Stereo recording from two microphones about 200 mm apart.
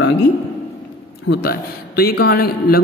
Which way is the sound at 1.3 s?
50° left (ahead or behind).